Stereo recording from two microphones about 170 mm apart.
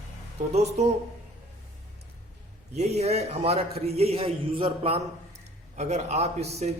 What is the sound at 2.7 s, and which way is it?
A man's voice, 40° right (ahead or behind).